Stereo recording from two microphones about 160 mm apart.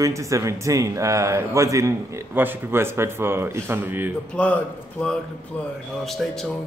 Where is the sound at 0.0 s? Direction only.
20° right (ahead or behind).